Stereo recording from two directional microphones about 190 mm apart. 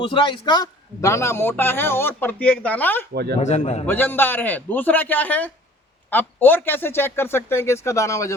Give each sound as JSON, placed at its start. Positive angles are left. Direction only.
{"t": 0.0, "sound": "a man's voice", "side_deg": 25}
{"t": 3.1, "sound": "speech", "side_deg": -60}
{"t": 3.4, "sound": "a man's voice", "side_deg": 35}
{"t": 3.8, "sound": "a man's voice", "side_deg": 10}